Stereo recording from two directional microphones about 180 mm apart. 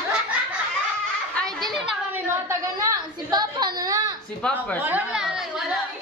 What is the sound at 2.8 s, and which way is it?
A woman's voice, 20° right (ahead or behind).